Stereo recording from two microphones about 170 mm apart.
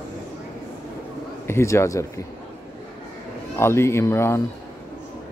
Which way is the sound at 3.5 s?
15° left (ahead or behind).